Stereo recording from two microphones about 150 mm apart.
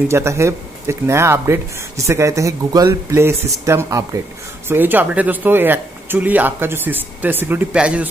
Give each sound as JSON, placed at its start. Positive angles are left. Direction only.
{"t": 0.1, "sound": "speech", "side_deg": -20}